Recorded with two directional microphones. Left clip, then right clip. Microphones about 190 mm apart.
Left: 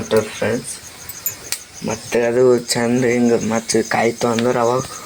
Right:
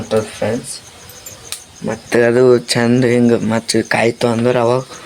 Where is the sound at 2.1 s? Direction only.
50° right (ahead or behind).